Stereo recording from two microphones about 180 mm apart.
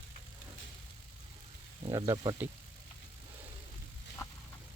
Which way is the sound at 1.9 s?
15° right (ahead or behind).